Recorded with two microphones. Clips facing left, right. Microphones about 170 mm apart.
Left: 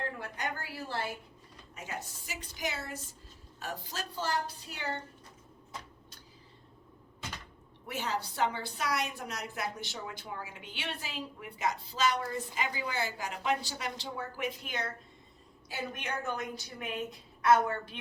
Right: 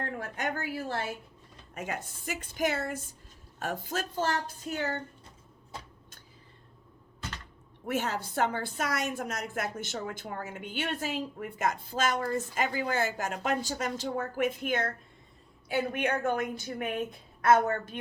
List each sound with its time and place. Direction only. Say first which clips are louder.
0.2 s a woman's voice: right 4 dB; 45° right (ahead or behind)
7.9 s a woman's voice: right 4 dB; 50° right (ahead or behind)